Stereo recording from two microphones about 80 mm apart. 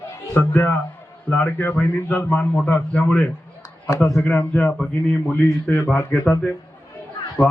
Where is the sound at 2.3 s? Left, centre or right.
Centre.